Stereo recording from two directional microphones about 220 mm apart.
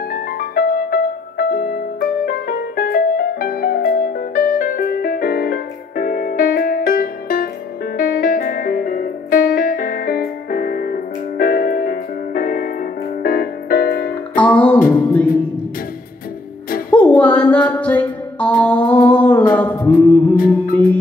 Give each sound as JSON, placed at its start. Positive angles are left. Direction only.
{"t": 0.1, "sound": "music", "side_deg": 40}
{"t": 14.3, "sound": "music", "side_deg": 5}
{"t": 16.9, "sound": "music", "side_deg": 5}